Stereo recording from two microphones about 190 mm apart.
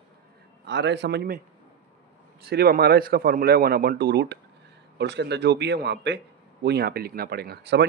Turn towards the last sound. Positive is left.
turn(degrees=-60)  # may be behind; listen again after turning